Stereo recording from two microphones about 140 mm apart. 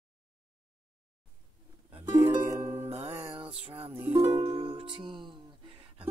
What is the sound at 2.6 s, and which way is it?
Music, 20° right (ahead or behind).